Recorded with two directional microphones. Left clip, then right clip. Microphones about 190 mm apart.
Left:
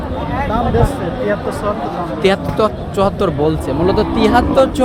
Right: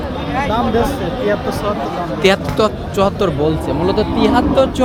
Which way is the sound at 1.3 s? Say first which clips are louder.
Right 1 dB; 20° right (ahead or behind).